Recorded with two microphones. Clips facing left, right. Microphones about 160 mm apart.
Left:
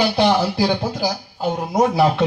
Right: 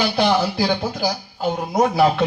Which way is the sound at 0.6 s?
10° left (ahead or behind).